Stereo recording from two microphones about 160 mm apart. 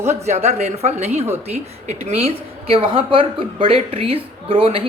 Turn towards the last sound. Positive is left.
turn(degrees=-35)  # may be behind; listen again after turning